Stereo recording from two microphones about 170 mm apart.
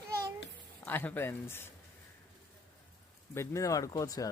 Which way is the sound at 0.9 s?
10° left (ahead or behind).